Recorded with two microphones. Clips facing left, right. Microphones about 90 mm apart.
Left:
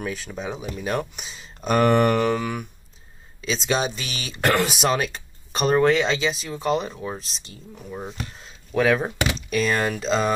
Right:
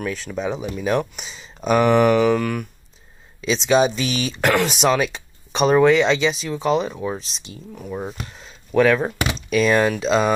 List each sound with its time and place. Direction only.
0.3 s speech: 10° right (ahead or behind)
0.8 s speech: 5° left (ahead or behind)
7.9 s speech: 30° right (ahead or behind)
8.2 s a sound: centre (ahead or behind)
9.0 s speech: 15° right (ahead or behind)
9.5 s speech: 5° right (ahead or behind)